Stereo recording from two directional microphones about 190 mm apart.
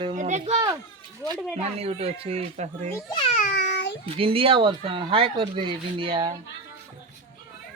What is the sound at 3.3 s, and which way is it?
Meow, 50° left (ahead or behind).